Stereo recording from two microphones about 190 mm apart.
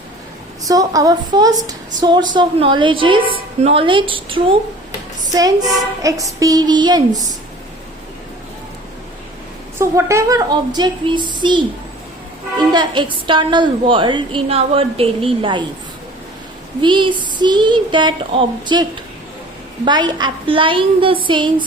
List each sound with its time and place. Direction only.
0.7 s a woman's voice: 20° right (ahead or behind)
9.7 s a woman's voice: 15° right (ahead or behind)
16.8 s a woman's voice: 25° right (ahead or behind)